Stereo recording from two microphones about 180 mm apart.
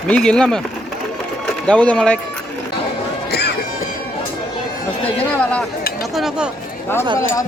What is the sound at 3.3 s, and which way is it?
Music, 65° left (ahead or behind).